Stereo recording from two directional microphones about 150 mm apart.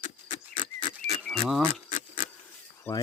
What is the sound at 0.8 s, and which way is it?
Wild animals, 45° left (ahead or behind).